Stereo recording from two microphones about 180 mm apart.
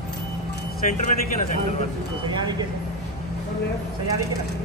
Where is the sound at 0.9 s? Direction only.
45° left (ahead or behind).